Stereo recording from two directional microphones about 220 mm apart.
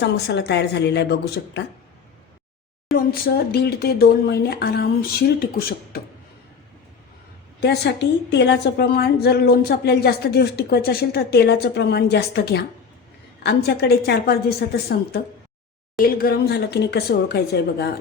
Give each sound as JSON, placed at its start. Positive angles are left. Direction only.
{"t": 0.0, "sound": "a woman's voice", "side_deg": 50}
{"t": 2.9, "sound": "a woman's voice", "side_deg": 45}
{"t": 7.6, "sound": "a woman's voice", "side_deg": 50}
{"t": 16.0, "sound": "a woman's voice", "side_deg": 40}